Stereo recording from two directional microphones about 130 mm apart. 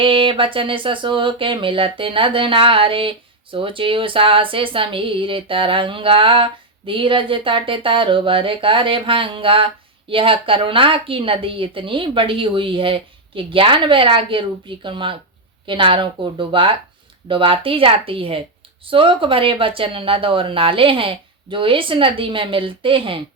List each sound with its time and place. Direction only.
0.0 s a woman's voice: 40° right (ahead or behind)